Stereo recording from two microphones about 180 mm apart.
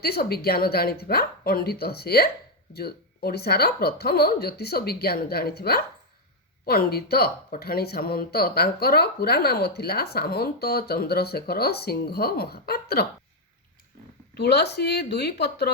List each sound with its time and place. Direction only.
0.0 s speech: 60° left (ahead or behind)
14.3 s speech: 65° left (ahead or behind)